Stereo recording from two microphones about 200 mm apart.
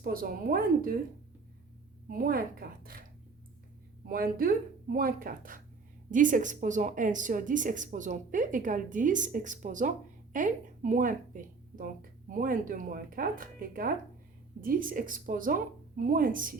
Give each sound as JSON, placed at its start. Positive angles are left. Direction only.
{"t": 0.0, "sound": "speech", "side_deg": -45}
{"t": 2.0, "sound": "speech", "side_deg": -45}
{"t": 4.0, "sound": "speech", "side_deg": -45}